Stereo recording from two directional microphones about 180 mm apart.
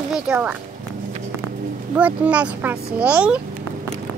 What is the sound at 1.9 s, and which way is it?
A child's voice, 5° right (ahead or behind).